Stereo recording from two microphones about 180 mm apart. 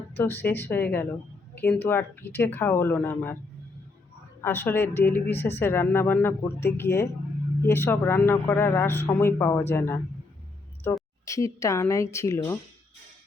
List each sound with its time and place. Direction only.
0.1 s speech: 10° left (ahead or behind)
4.4 s speech: 10° left (ahead or behind)
11.3 s speech: 15° left (ahead or behind)